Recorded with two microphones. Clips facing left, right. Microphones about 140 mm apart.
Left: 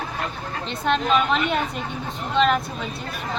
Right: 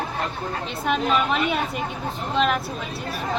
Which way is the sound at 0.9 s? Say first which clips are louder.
Left 2 dB; 5° right (ahead or behind).